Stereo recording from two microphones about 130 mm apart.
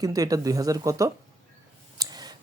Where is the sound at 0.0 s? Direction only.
30° right (ahead or behind).